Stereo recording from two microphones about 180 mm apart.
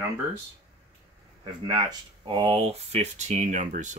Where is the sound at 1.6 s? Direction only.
25° right (ahead or behind).